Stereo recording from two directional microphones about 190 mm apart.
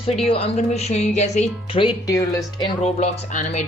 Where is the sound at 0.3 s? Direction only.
30° left (ahead or behind).